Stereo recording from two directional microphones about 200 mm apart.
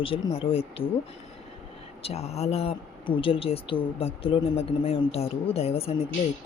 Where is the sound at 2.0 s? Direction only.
30° left (ahead or behind).